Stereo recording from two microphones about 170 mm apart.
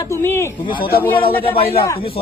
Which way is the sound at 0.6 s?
30° left (ahead or behind).